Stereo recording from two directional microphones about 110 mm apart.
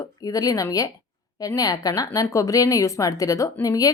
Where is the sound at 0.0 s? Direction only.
35° left (ahead or behind).